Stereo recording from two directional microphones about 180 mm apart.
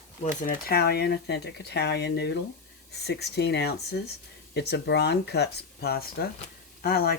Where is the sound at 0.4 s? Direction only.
55° left (ahead or behind).